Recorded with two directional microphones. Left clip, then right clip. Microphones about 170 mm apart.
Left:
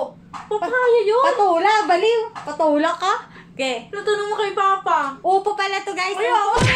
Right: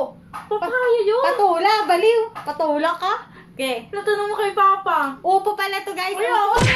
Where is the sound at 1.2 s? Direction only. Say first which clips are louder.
Left 1 dB; 10° left (ahead or behind).